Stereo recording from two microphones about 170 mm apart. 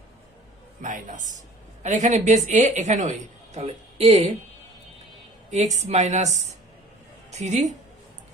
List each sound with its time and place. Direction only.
0.8 s a woman's voice: 50° right (ahead or behind)
5.5 s a woman's voice: 40° right (ahead or behind)